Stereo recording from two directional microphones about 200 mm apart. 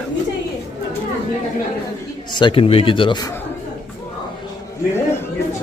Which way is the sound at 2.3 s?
25° left (ahead or behind).